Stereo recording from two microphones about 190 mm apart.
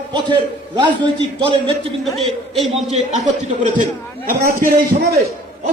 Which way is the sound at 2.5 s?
Centre (ahead or behind).